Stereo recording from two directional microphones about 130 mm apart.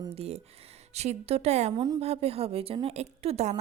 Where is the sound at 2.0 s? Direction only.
50° right (ahead or behind).